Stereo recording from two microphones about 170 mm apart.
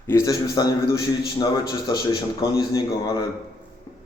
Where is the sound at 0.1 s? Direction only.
20° left (ahead or behind).